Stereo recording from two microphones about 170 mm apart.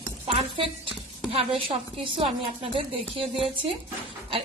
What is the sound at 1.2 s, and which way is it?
A woman's voice, 35° right (ahead or behind).